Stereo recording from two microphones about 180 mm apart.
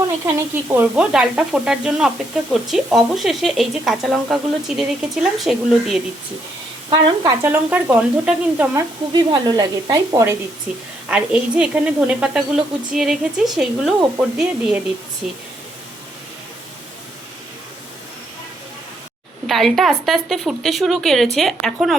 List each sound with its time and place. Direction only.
0.8 s sizzle: 5° right (ahead or behind)
6.9 s speech: 20° right (ahead or behind)
9.1 s speech: 25° right (ahead or behind)
10.7 s sizzle: 5° right (ahead or behind)
14.2 s speech: 5° right (ahead or behind)
15.2 s sizzle: 5° right (ahead or behind)
19.5 s sizzle: centre (ahead or behind)